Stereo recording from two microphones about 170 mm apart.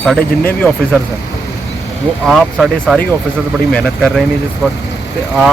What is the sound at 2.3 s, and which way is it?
Speech, centre (ahead or behind).